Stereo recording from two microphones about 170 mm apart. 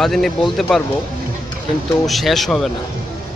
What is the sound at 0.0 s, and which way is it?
Speech, centre (ahead or behind).